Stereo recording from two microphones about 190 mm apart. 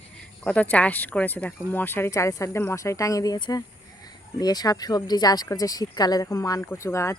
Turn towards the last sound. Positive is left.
turn(degrees=15)  # may be behind; listen again after turning